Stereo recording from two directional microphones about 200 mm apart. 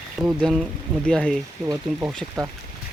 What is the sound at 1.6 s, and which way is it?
Speech, 15° right (ahead or behind).